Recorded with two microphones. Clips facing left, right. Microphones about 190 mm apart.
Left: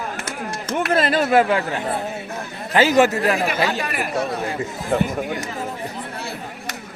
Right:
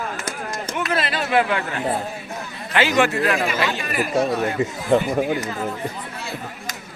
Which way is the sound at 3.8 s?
60° left (ahead or behind).